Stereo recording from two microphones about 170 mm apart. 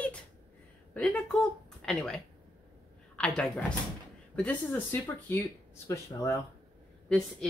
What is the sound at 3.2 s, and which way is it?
Speech, 5° left (ahead or behind).